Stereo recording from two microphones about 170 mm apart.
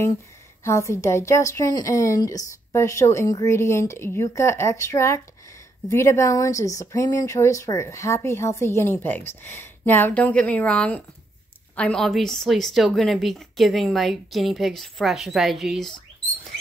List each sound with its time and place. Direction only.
0.7 s a woman's voice: 15° left (ahead or behind); by 15.9 s centre (ahead or behind)